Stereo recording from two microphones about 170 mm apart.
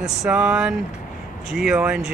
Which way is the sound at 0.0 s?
Centre (ahead or behind).